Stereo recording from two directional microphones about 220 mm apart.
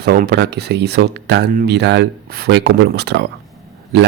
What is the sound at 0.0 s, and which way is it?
Speech, 45° right (ahead or behind).